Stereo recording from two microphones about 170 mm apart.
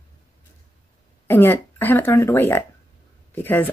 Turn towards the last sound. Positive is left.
turn(degrees=10)  # may be behind; listen again after turning